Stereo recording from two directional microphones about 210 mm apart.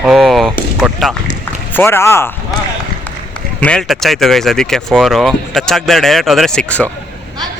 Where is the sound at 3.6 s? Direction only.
5° left (ahead or behind).